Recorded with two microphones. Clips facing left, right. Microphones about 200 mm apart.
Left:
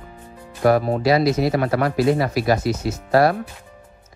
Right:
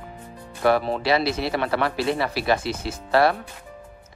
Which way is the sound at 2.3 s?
30° right (ahead or behind).